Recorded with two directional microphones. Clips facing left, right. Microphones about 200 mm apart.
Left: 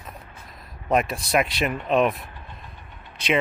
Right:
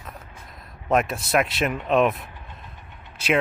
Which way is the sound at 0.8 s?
Centre (ahead or behind).